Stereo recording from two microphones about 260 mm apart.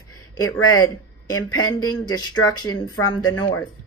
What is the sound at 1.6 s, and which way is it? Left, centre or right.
Speech, left.